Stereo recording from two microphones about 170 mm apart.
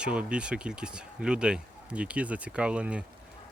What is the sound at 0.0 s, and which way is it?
Speech, 5° right (ahead or behind).